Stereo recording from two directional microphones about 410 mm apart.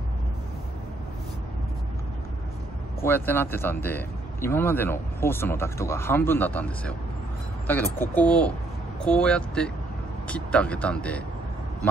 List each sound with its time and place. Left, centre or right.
3.0 s speech: centre